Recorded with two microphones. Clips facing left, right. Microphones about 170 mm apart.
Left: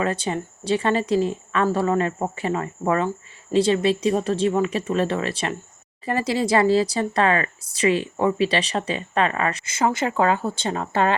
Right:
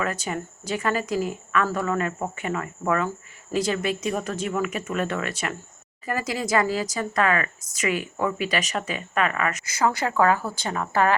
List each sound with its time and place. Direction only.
0.0 s speech: 30° left (ahead or behind)